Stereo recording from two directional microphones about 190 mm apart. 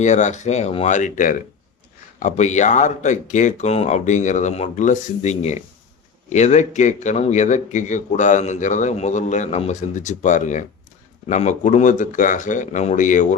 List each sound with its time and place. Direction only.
0.0 s a man's voice: 40° left (ahead or behind)